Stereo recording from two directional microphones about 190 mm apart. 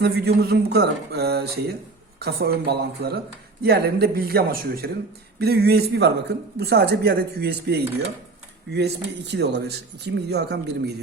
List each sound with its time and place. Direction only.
0.0 s a man's voice: 60° right (ahead or behind)